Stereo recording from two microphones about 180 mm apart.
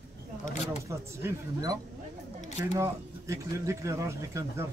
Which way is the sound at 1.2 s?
20° right (ahead or behind).